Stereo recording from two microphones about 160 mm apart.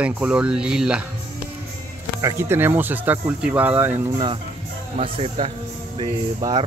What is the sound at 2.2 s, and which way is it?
Speech, 15° right (ahead or behind).